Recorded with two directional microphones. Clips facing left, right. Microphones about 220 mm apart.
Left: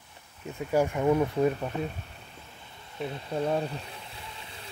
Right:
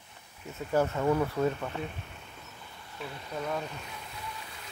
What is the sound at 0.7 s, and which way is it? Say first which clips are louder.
Speech: left 2 dB; 15° left (ahead or behind).